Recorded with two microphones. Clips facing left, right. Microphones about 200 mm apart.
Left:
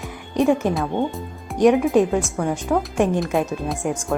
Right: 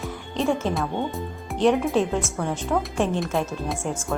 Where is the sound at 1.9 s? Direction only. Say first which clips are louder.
Left 5 dB; 15° left (ahead or behind).